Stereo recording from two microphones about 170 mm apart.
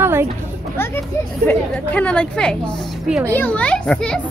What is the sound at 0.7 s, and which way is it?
A woman's voice, 15° left (ahead or behind).